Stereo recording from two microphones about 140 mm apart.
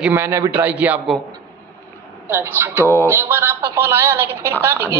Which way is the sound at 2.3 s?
15° right (ahead or behind).